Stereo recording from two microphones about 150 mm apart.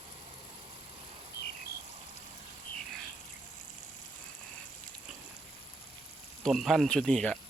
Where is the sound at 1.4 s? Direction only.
90° left.